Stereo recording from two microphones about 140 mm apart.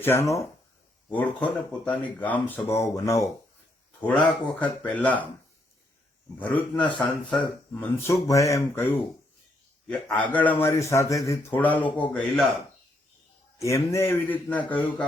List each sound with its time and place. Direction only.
0.0 s speech: 15° left (ahead or behind)
2.8 s speech: 25° left (ahead or behind)
4.0 s speech: 10° left (ahead or behind)
6.4 s speech: 10° left (ahead or behind)
10.2 s speech: 10° left (ahead or behind)
13.6 s speech: 20° left (ahead or behind)